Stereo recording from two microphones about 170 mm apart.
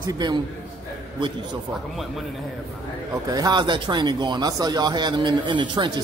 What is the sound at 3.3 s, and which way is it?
Speech, 25° right (ahead or behind).